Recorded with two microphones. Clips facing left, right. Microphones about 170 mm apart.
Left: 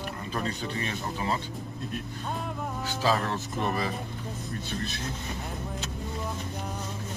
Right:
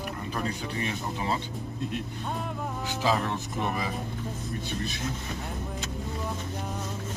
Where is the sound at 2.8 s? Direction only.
15° right (ahead or behind).